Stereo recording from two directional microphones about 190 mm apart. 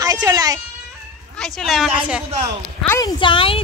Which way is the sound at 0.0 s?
20° right (ahead or behind).